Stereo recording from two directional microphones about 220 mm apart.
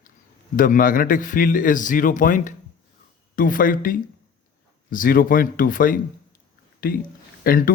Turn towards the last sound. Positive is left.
turn(degrees=40)  # may be behind; listen again after turning